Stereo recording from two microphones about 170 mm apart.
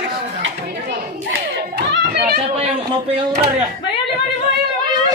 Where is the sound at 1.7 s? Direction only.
80° right.